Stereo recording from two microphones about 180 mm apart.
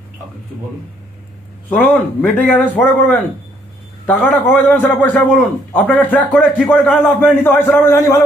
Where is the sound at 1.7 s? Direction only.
10° left (ahead or behind).